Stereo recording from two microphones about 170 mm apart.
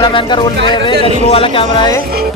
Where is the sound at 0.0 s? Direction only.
30° left (ahead or behind).